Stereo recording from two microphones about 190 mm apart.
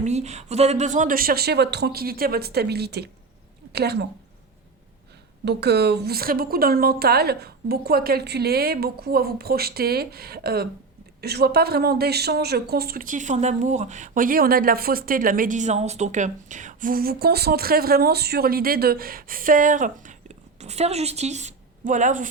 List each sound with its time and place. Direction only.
0.0 s a woman's voice: 35° right (ahead or behind); by 4.0 s 60° right (ahead or behind)
5.5 s speech: 60° right (ahead or behind); by 22.3 s 40° right (ahead or behind)